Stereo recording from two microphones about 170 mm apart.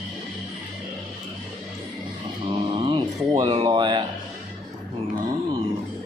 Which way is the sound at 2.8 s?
25° right (ahead or behind).